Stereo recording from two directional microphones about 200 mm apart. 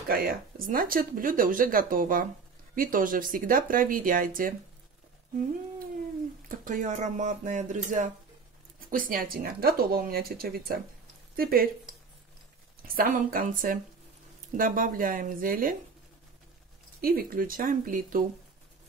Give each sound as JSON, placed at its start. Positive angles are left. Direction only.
{"t": 0.1, "sound": "speech", "side_deg": -50}
{"t": 6.5, "sound": "speech", "side_deg": -40}
{"t": 12.8, "sound": "speech", "side_deg": -45}
{"t": 17.0, "sound": "speech", "side_deg": -45}